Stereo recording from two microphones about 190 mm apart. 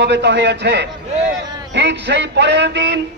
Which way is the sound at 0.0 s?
65° right (ahead or behind).